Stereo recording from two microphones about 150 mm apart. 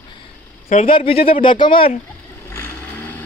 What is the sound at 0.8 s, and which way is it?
Speech, 40° left (ahead or behind).